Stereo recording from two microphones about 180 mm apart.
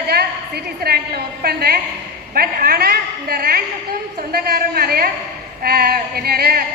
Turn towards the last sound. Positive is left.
turn(degrees=-60)  # may be behind; listen again after turning